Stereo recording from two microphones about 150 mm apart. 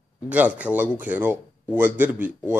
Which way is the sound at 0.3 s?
10° right (ahead or behind).